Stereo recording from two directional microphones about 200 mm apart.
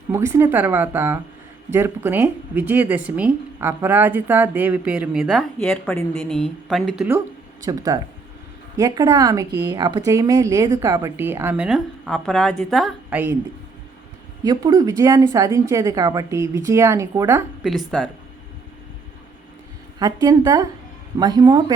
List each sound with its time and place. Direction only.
0.1 s speech: 15° right (ahead or behind)
7.6 s speech: 15° right (ahead or behind)
14.4 s speech: 20° right (ahead or behind)
17.7 s speech: centre (ahead or behind)
20.0 s a woman's voice: 20° right (ahead or behind)